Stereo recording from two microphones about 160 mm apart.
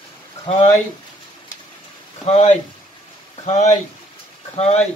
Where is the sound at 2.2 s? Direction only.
40° left (ahead or behind).